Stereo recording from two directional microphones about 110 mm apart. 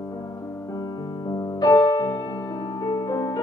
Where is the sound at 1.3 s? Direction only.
35° left (ahead or behind).